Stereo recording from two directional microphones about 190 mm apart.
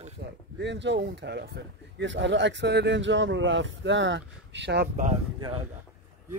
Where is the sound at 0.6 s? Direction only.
70° right (ahead or behind).